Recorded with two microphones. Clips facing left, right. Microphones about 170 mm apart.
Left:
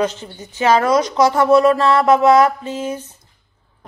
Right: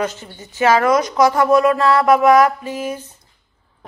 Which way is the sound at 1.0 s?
25° left (ahead or behind).